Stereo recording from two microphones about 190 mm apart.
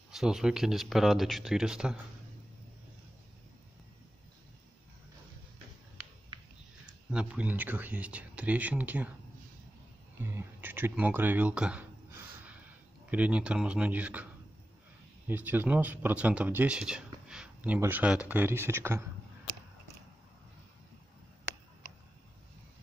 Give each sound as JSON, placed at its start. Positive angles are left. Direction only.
{"t": 0.1, "sound": "speech", "side_deg": 0}
{"t": 6.3, "sound": "a sound", "side_deg": -25}
{"t": 7.1, "sound": "speech", "side_deg": -5}
{"t": 10.2, "sound": "speech", "side_deg": -10}